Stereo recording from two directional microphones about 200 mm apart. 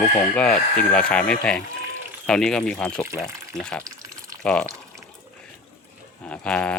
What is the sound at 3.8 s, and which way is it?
Water, 15° right (ahead or behind).